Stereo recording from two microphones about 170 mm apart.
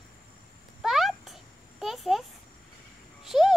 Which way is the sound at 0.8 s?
Centre (ahead or behind).